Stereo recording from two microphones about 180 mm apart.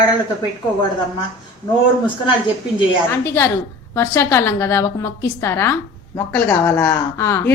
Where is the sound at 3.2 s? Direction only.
15° left (ahead or behind).